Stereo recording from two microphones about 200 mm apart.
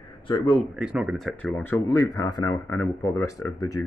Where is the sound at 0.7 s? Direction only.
5° right (ahead or behind).